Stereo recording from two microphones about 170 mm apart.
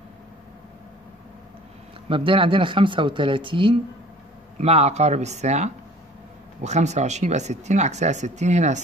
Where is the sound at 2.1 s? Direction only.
30° right (ahead or behind).